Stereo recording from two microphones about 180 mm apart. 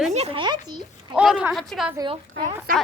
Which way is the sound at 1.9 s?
25° right (ahead or behind).